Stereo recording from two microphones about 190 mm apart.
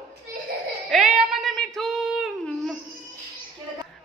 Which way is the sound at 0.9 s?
5° right (ahead or behind).